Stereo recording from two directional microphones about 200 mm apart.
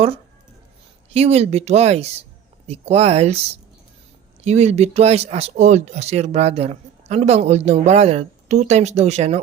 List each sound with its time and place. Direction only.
1.1 s speech: 30° right (ahead or behind)